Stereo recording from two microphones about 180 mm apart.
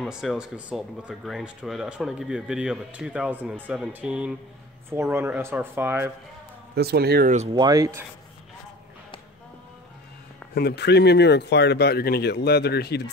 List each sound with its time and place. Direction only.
0.0 s speech: centre (ahead or behind)
6.7 s speech: 60° right (ahead or behind)
7.5 s speech: 20° right (ahead or behind)
10.5 s speech: 65° left (ahead or behind)